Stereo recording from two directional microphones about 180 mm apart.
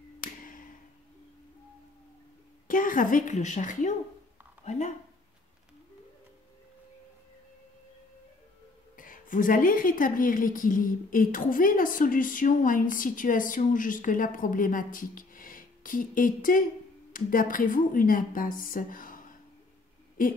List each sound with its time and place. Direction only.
0.2 s a sound: 50° left (ahead or behind)
2.7 s a woman's voice: 50° left (ahead or behind)
8.9 s a woman's voice: 50° left (ahead or behind)